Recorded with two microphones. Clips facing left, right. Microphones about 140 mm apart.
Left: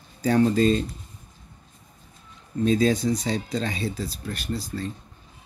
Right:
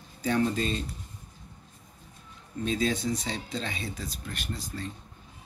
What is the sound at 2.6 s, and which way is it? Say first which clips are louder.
Speech: left 7 dB; 40° left (ahead or behind).